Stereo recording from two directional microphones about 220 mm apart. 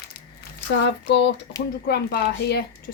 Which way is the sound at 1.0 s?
50° left (ahead or behind).